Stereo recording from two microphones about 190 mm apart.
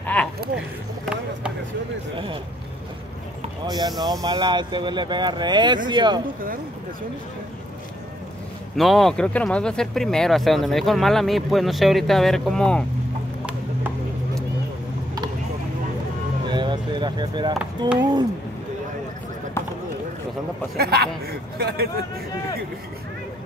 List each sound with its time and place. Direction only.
0.0 s a sound: 5° left (ahead or behind)
3.6 s speech: 20° right (ahead or behind)
8.7 s speech: centre (ahead or behind)
13.5 s chopping: 10° right (ahead or behind)
16.4 s speech: 25° right (ahead or behind)
20.7 s speech: 55° right (ahead or behind)